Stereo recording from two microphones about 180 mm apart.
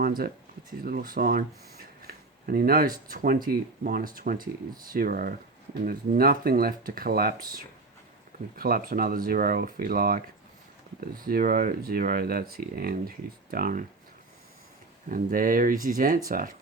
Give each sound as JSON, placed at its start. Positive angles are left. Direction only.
{"t": 0.0, "sound": "speech", "side_deg": -55}
{"t": 8.5, "sound": "speech", "side_deg": -55}
{"t": 15.1, "sound": "speech", "side_deg": -50}